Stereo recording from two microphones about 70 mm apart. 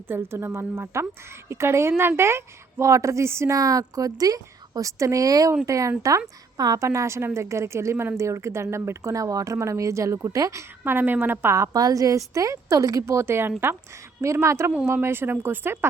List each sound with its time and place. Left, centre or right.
0.1 s a woman's voice: right
10.8 s a woman's voice: right
11.7 s a woman's voice: right